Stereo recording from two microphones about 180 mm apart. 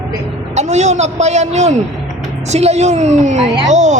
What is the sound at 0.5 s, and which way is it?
A man's voice, 40° right (ahead or behind).